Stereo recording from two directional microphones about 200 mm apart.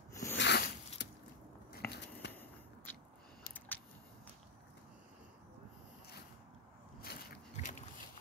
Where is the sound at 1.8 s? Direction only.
10° left (ahead or behind).